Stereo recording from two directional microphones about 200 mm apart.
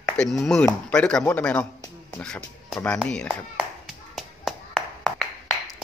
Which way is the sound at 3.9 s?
Centre (ahead or behind).